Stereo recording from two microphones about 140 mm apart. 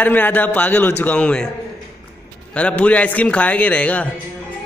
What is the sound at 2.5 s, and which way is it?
A man's voice, 10° left (ahead or behind).